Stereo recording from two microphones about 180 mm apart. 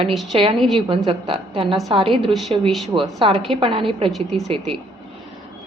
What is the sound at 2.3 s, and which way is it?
Speech, centre (ahead or behind).